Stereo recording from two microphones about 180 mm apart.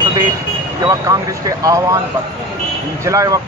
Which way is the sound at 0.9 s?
20° right (ahead or behind).